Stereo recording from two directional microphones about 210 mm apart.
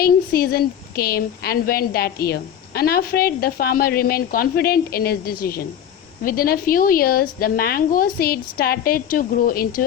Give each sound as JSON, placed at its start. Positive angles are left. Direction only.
{"t": 0.0, "sound": "a woman's voice", "side_deg": 45}